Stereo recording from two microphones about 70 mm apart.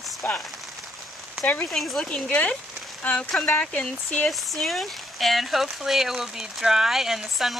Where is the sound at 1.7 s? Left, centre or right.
Centre.